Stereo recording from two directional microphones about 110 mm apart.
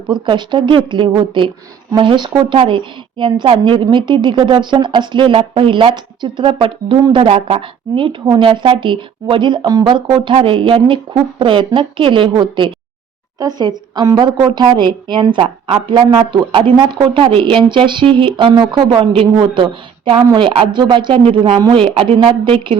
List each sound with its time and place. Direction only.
0.1 s a woman's voice: 45° right (ahead or behind)
13.4 s a woman's voice: 40° right (ahead or behind)